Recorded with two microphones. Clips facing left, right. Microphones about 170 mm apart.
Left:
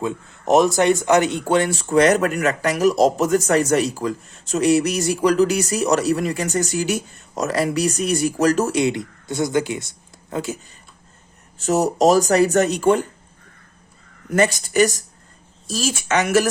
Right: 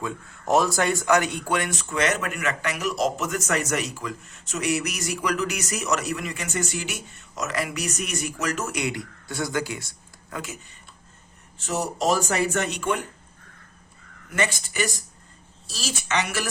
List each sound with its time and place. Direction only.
0.0 s speech: 20° left (ahead or behind)
11.5 s speech: 45° left (ahead or behind)
14.3 s speech: 40° left (ahead or behind)